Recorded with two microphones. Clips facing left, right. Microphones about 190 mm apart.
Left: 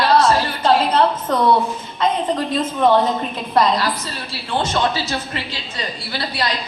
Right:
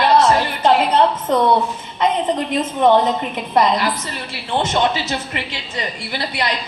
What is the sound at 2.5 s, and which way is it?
Speech, 20° right (ahead or behind).